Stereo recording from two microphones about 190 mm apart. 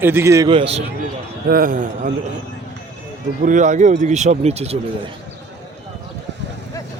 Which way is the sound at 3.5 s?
40° right (ahead or behind).